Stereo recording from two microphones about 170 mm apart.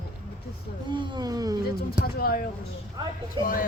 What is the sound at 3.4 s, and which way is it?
Speech, 55° left (ahead or behind).